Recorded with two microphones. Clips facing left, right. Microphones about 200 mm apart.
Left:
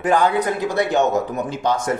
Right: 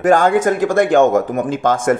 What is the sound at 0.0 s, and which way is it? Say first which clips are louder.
Speech: right 5 dB; 45° right (ahead or behind).